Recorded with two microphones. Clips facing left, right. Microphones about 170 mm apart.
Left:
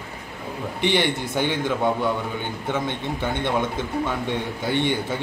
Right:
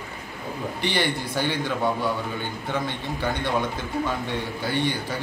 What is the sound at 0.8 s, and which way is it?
Speech, 20° left (ahead or behind).